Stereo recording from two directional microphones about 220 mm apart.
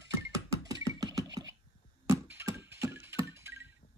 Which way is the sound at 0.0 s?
15° right (ahead or behind).